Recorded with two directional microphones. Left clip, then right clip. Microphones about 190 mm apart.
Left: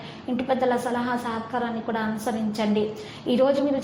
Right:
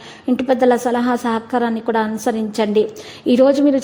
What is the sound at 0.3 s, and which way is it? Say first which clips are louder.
A woman's voice: right 8 dB; 45° right (ahead or behind).